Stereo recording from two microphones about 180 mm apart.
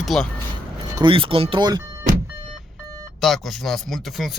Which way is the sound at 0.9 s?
25° right (ahead or behind).